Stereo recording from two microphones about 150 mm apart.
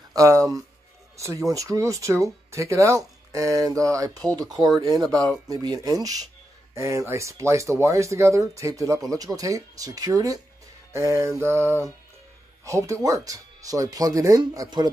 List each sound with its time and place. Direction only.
0.1 s speech: 20° right (ahead or behind)